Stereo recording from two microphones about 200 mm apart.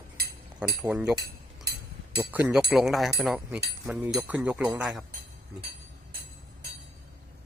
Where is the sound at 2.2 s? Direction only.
10° right (ahead or behind).